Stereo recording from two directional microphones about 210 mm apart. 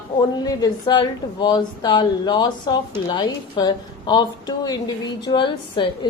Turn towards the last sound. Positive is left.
turn(degrees=25)  # may be behind; listen again after turning